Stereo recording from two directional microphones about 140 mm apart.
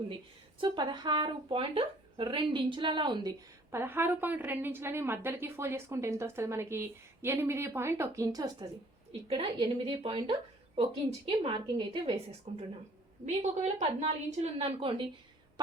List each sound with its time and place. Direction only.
0.6 s speech: 30° right (ahead or behind)
3.7 s a woman's voice: 15° right (ahead or behind)
9.2 s a woman's voice: 40° right (ahead or behind)
12.5 s a woman's voice: 45° right (ahead or behind)